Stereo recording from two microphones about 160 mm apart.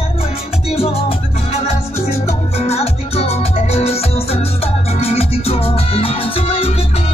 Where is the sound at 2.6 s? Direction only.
40° left (ahead or behind).